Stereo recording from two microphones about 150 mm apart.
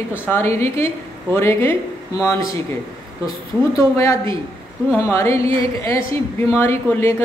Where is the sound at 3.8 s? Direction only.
20° left (ahead or behind).